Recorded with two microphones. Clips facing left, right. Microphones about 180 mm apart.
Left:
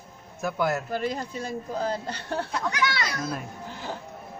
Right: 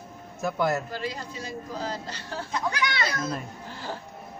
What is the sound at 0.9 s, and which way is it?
A man's voice, 50° left (ahead or behind).